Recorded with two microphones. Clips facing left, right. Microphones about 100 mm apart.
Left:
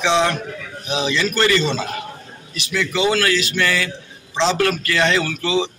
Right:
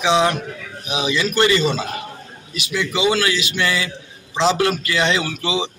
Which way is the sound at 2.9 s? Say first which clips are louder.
Even; 10° right (ahead or behind).